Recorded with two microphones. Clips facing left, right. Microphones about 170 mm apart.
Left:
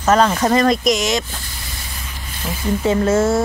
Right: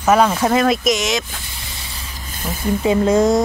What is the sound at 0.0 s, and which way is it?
Speech, 10° right (ahead or behind).